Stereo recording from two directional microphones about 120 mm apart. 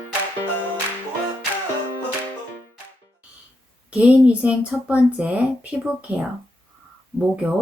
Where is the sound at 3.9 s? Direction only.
10° right (ahead or behind).